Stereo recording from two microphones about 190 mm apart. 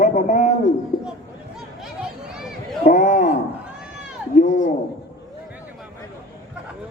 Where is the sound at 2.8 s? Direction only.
40° left (ahead or behind).